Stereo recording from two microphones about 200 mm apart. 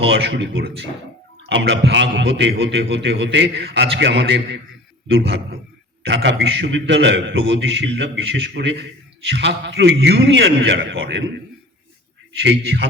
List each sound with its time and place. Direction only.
0.1 s a man's voice: 60° right (ahead or behind)
6.1 s a man's voice: 60° right (ahead or behind)
12.4 s a man's voice: 60° right (ahead or behind)